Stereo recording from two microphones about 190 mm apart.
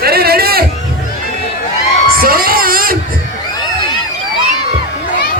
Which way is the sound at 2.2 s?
50° right (ahead or behind).